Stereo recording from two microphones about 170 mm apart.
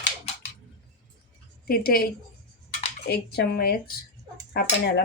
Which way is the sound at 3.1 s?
70° left (ahead or behind).